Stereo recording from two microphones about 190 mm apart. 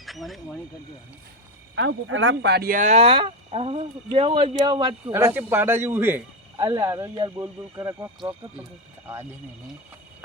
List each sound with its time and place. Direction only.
0.0 s speech: centre (ahead or behind)
1.7 s speech: 80° right; by 5.1 s 25° right (ahead or behind)
5.1 s speech: 10° right (ahead or behind)